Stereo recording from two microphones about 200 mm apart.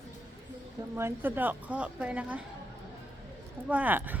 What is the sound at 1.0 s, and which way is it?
A woman's voice, 10° right (ahead or behind).